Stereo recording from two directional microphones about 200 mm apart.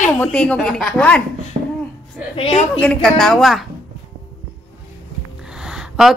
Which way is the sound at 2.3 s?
30° left (ahead or behind).